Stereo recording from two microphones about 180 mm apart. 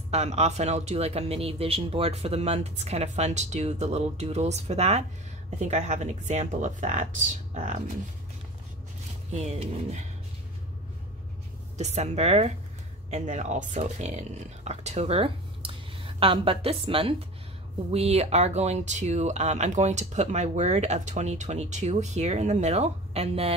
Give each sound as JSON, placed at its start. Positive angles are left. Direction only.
{"t": 0.1, "sound": "speech", "side_deg": -35}
{"t": 9.3, "sound": "speech", "side_deg": -35}
{"t": 11.8, "sound": "speech", "side_deg": -35}